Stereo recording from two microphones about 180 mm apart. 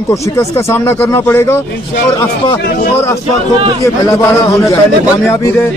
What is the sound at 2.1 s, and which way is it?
Speech, 25° left (ahead or behind).